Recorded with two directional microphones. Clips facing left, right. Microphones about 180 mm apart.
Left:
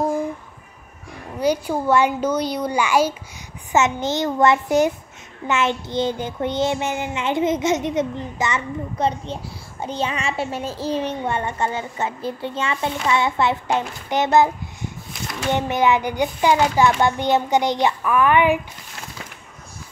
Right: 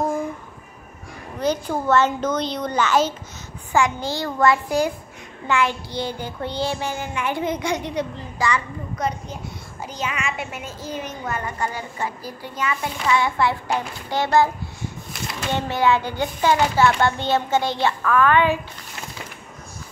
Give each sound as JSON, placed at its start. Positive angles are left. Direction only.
{"t": 1.4, "sound": "child singing", "side_deg": 10}